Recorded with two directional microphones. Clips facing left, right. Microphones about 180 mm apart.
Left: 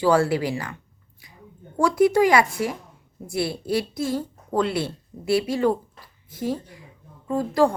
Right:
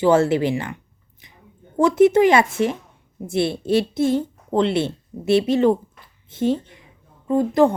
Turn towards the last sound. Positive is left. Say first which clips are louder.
# right 4 dB
turn(degrees=-20)  # may be behind; listen again after turning